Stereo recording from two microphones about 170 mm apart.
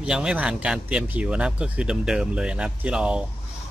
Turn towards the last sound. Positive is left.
turn(degrees=-5)  # may be behind; listen again after turning